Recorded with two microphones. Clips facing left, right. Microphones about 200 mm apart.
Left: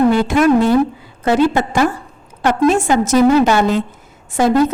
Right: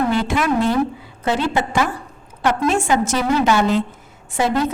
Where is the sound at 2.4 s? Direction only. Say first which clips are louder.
Left 5 dB; 40° left (ahead or behind).